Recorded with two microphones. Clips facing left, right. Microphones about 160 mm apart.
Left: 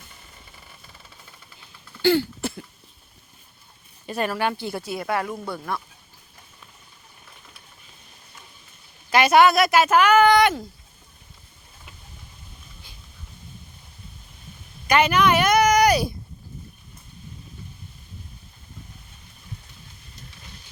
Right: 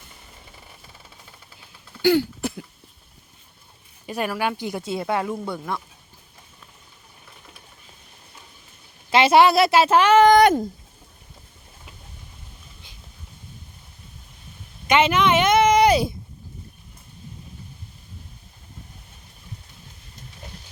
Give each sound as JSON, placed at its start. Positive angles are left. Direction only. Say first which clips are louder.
{"t": 2.0, "sound": "cough", "louder": "right 1 dB", "side_deg": -15}
{"t": 4.0, "sound": "speech", "louder": "even", "side_deg": -10}
{"t": 9.0, "sound": "speech", "louder": "right 1 dB", "side_deg": -25}
{"t": 14.8, "sound": "a sound", "louder": "even", "side_deg": -20}